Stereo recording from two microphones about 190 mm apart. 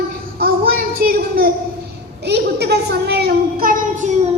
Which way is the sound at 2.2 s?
60° right (ahead or behind).